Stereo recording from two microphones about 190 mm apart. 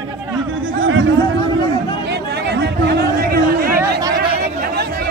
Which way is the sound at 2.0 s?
60° right (ahead or behind).